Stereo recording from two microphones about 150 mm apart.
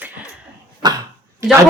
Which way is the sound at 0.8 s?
30° right (ahead or behind).